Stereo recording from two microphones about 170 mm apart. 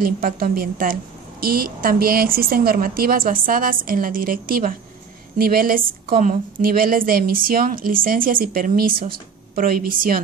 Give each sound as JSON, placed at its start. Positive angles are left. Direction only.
{"t": 0.0, "sound": "a woman's voice", "side_deg": -60}